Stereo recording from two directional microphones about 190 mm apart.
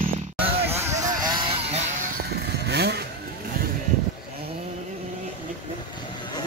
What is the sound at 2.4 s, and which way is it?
Vehicle, 60° right (ahead or behind).